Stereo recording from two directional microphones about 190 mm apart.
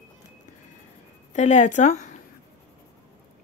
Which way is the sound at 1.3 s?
40° left (ahead or behind).